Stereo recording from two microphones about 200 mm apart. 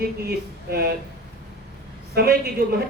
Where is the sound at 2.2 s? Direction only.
50° right (ahead or behind).